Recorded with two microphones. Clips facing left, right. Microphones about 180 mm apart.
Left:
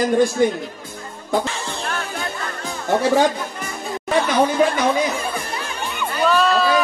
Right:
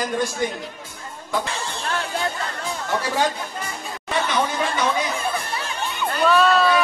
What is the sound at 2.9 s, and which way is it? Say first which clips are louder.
Speech: left 7 dB; 60° left (ahead or behind).